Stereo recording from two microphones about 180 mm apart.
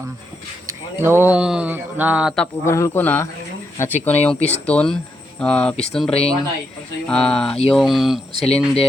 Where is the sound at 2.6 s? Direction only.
15° left (ahead or behind).